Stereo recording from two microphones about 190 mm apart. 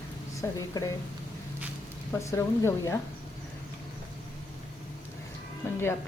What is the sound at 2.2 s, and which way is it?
Speech, 15° left (ahead or behind).